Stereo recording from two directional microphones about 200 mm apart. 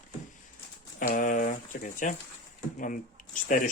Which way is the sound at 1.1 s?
45° left (ahead or behind).